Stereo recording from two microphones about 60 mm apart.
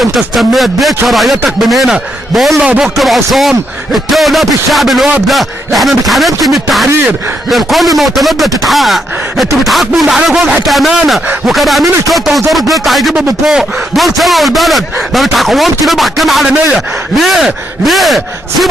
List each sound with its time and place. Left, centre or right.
0.0 s a man's voice: centre